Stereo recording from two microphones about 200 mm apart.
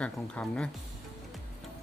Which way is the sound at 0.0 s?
5° left (ahead or behind).